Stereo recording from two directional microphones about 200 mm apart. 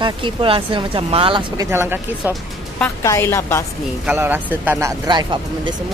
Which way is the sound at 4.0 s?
10° right (ahead or behind).